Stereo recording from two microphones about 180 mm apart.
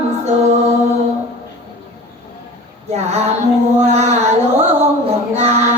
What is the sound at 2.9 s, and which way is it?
Female singing, 35° right (ahead or behind).